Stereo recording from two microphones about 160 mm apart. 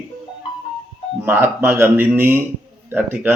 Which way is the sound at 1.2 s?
15° right (ahead or behind).